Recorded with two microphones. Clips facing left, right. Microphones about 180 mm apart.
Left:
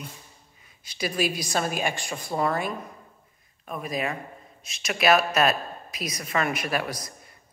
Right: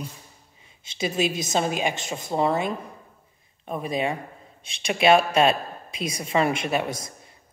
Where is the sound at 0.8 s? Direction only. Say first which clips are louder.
Right 2 dB; 25° right (ahead or behind).